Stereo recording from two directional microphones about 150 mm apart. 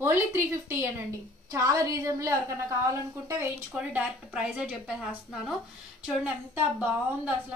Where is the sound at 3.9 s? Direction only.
10° right (ahead or behind).